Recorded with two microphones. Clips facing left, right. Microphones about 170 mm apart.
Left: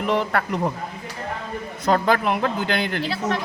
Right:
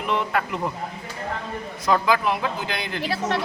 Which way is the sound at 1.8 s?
60° left (ahead or behind).